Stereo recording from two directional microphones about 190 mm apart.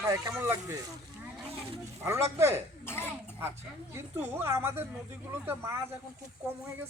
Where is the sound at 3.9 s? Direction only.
15° right (ahead or behind).